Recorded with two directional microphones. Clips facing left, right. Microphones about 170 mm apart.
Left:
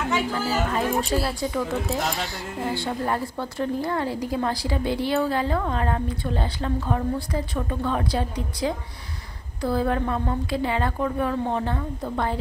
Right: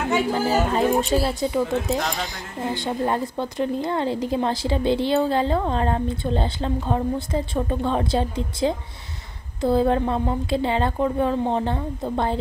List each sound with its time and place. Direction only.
0.3 s a woman's voice: 30° right (ahead or behind)
2.0 s speech: 5° left (ahead or behind)
2.2 s a woman's voice: 20° right (ahead or behind)